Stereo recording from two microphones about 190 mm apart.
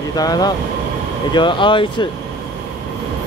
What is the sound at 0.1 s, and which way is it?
Speech, 20° left (ahead or behind).